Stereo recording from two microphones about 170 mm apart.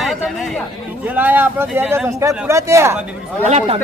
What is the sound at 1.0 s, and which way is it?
Speech, 10° right (ahead or behind).